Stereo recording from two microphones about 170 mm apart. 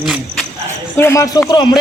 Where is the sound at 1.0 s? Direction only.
15° left (ahead or behind).